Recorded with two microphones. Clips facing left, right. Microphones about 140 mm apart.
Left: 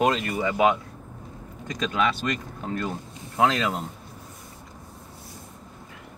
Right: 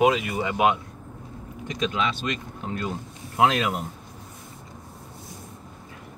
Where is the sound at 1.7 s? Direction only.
20° right (ahead or behind).